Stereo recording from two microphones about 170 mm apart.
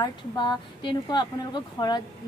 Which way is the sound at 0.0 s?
25° left (ahead or behind).